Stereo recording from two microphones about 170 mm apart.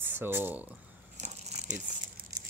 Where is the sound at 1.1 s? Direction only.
45° right (ahead or behind).